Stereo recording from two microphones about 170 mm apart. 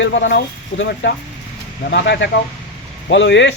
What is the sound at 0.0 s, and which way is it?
Speech, 90° left.